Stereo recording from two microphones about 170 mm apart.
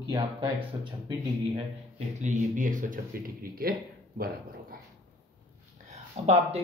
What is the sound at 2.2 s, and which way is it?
Speech, 45° right (ahead or behind).